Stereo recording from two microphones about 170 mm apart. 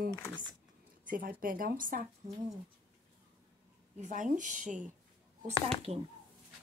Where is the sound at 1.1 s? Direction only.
55° right (ahead or behind).